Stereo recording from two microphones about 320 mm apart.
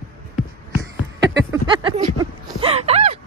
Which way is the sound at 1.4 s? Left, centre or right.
Centre.